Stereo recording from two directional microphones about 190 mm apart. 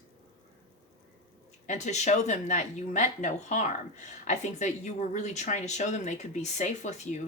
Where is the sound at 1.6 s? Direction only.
40° left (ahead or behind).